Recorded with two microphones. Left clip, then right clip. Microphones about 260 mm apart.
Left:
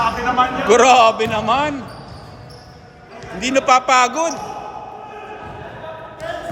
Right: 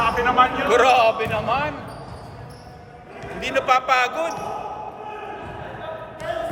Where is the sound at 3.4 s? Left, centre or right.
Left.